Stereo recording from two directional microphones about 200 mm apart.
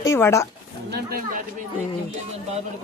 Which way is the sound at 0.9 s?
50° right (ahead or behind).